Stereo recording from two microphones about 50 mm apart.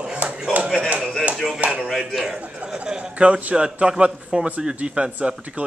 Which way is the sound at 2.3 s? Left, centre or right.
Centre.